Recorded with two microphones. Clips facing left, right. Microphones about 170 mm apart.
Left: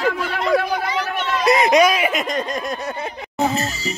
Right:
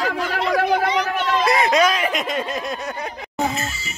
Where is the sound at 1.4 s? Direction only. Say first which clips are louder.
Left 4 dB; 20° left (ahead or behind).